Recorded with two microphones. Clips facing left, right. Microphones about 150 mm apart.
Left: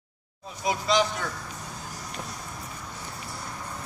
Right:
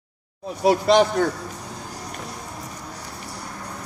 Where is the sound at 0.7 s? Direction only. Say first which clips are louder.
Right 8 dB; 55° right (ahead or behind).